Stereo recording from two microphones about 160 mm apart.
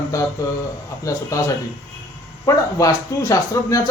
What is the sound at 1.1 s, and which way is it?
Speech, 20° left (ahead or behind).